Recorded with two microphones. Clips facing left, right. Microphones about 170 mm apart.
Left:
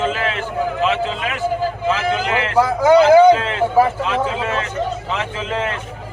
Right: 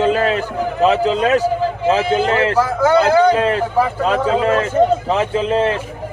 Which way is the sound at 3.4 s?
35° right (ahead or behind).